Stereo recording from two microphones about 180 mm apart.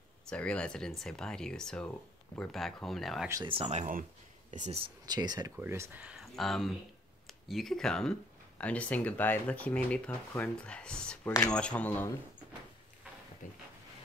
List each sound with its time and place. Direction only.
0.3 s speech: 5° left (ahead or behind)
3.4 s speech: 30° right (ahead or behind)
4.5 s speech: 40° right (ahead or behind)
5.0 s speech: 20° right (ahead or behind); by 12.1 s 10° left (ahead or behind)
13.4 s a sound: 45° left (ahead or behind)